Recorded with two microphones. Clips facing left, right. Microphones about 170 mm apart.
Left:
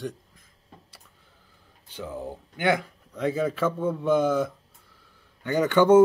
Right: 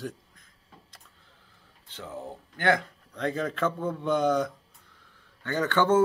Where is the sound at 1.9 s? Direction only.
10° left (ahead or behind).